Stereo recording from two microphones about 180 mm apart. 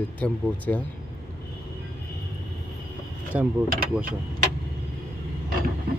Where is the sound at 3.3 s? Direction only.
10° right (ahead or behind).